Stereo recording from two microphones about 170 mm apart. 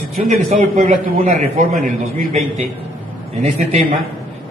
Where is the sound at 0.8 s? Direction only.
55° right (ahead or behind).